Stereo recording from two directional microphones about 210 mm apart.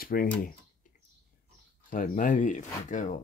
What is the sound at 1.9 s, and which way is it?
Speech, 40° left (ahead or behind).